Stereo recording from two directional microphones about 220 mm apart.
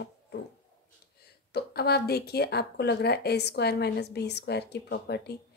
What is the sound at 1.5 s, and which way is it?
A woman's voice, 45° left (ahead or behind).